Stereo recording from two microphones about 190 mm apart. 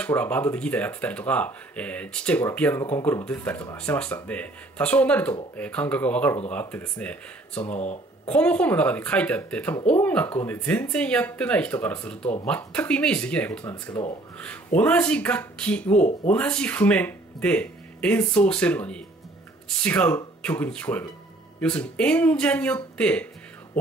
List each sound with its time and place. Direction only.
0.0 s speech: 10° left (ahead or behind)